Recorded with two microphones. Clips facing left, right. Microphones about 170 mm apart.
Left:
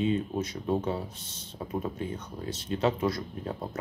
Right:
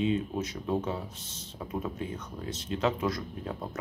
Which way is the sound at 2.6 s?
30° left (ahead or behind).